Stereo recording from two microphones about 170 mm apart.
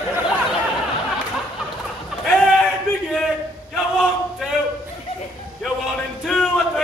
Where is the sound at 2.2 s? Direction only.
5° left (ahead or behind).